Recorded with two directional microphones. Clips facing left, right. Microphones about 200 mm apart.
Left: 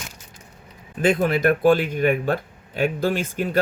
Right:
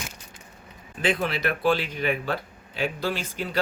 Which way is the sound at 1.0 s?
45° left (ahead or behind).